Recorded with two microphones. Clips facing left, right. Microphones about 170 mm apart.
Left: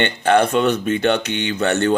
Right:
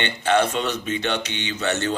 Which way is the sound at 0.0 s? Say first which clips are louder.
Left 4 dB; 55° left (ahead or behind).